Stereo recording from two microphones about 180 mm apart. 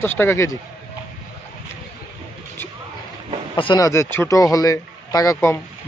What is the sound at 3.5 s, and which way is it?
A man's voice, 25° left (ahead or behind).